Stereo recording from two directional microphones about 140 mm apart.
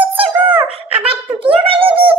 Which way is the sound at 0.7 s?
40° right (ahead or behind).